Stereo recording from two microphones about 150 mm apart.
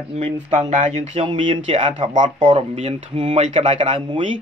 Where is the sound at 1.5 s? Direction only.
40° right (ahead or behind).